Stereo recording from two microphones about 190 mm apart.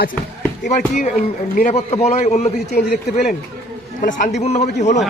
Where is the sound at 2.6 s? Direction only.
55° left (ahead or behind).